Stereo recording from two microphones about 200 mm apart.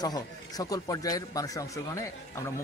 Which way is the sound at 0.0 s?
20° left (ahead or behind).